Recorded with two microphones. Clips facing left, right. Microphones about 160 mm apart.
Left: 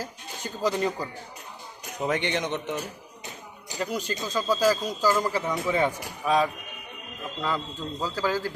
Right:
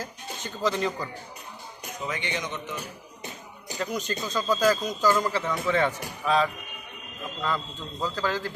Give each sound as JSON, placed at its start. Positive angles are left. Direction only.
{"t": 0.6, "sound": "speech", "side_deg": 10}
{"t": 2.0, "sound": "a man's voice", "side_deg": 60}
{"t": 3.8, "sound": "speech", "side_deg": 5}
{"t": 8.0, "sound": "speech", "side_deg": 10}